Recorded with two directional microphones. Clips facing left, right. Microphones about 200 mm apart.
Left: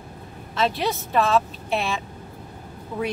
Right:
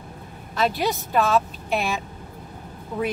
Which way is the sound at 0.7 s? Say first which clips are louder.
Right 2 dB; 5° right (ahead or behind).